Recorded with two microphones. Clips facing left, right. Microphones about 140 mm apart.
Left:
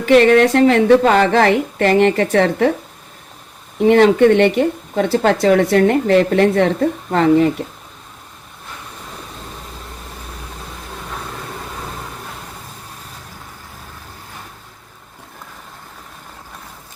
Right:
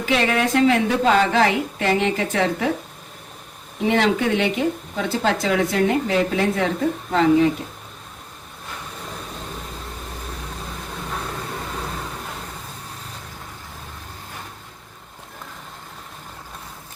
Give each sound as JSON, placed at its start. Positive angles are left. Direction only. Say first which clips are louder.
{"t": 0.0, "sound": "a woman's voice", "louder": "left 10 dB", "side_deg": 60}
{"t": 3.8, "sound": "a woman's voice", "louder": "left 9 dB", "side_deg": 55}